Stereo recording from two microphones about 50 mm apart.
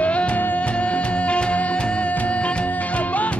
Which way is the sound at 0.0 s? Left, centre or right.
Left.